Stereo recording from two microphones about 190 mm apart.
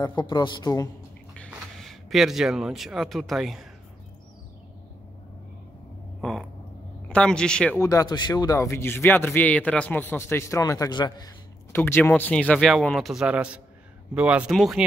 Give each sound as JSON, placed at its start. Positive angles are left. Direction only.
{"t": 0.0, "sound": "a man's voice", "side_deg": 20}
{"t": 1.5, "sound": "speech", "side_deg": 0}
{"t": 7.1, "sound": "speech", "side_deg": 5}
{"t": 7.8, "sound": "a man's voice", "side_deg": 20}